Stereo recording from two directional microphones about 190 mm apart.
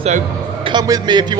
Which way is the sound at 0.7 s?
20° right (ahead or behind).